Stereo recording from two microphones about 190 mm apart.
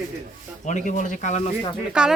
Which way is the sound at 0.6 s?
40° left (ahead or behind).